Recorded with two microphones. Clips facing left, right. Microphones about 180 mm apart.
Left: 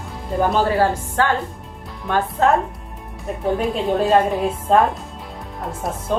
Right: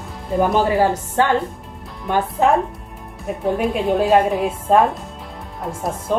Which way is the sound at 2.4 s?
15° right (ahead or behind).